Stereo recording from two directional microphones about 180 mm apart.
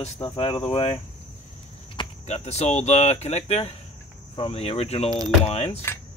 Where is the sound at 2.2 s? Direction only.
35° left (ahead or behind).